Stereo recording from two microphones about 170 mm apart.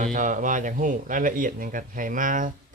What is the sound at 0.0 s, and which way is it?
Speech, 50° right (ahead or behind).